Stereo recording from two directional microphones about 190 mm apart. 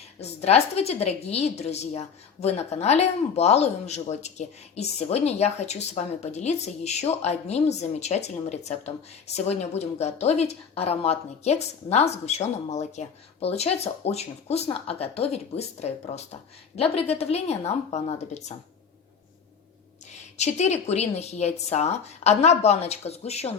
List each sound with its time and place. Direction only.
0.2 s a woman's voice: 35° left (ahead or behind)
20.1 s a woman's voice: 35° left (ahead or behind)